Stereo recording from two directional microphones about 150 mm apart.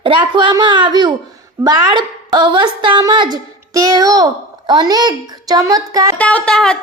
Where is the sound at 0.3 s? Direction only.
30° right (ahead or behind).